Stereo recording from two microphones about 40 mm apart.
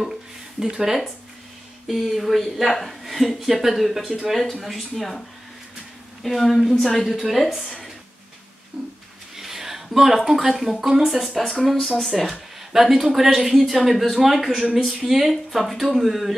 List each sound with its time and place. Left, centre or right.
0.6 s speech: centre
1.9 s speech: centre
6.2 s speech: centre
8.7 s a sound: centre
9.8 s speech: centre